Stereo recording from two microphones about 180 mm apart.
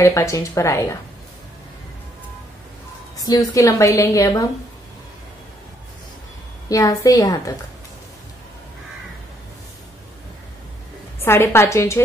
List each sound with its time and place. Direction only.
0.0 s speech: 15° left (ahead or behind)
3.3 s a woman's voice: 20° left (ahead or behind)
6.7 s a woman's voice: 20° left (ahead or behind)
11.2 s speech: 15° left (ahead or behind)